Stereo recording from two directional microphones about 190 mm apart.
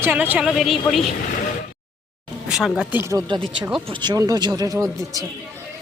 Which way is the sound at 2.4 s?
Centre (ahead or behind).